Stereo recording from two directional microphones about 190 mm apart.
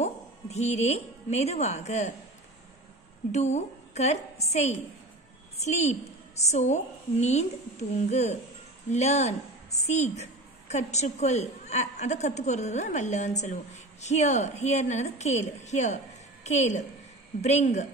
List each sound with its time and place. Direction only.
0.0 s a woman's voice: 35° left (ahead or behind)
3.3 s a woman's voice: 35° left (ahead or behind)